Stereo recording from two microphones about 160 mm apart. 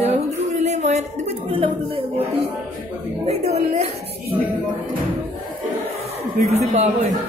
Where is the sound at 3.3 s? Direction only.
40° right (ahead or behind).